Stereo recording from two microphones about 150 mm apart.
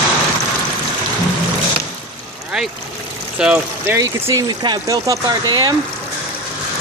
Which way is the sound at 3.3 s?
10° right (ahead or behind).